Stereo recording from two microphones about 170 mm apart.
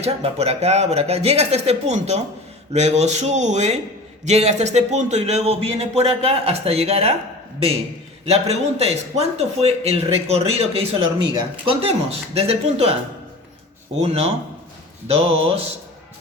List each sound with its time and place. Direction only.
0.0 s a man's voice: 35° right (ahead or behind)
8.2 s a man's voice: 40° right (ahead or behind)
14.0 s a man's voice: 40° right (ahead or behind)